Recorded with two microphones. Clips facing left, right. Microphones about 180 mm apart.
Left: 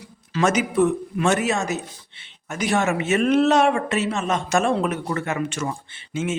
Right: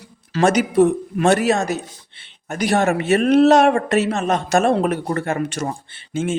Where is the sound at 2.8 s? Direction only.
55° right (ahead or behind).